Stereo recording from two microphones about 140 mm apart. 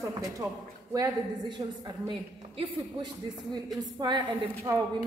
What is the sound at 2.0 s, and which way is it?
A man's voice, 35° right (ahead or behind).